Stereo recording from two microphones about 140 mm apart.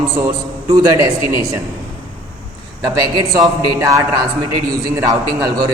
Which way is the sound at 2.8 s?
30° right (ahead or behind).